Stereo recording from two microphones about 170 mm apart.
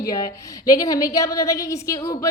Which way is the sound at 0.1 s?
20° left (ahead or behind).